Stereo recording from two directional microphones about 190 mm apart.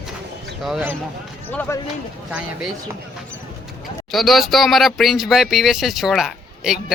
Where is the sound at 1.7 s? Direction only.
15° left (ahead or behind).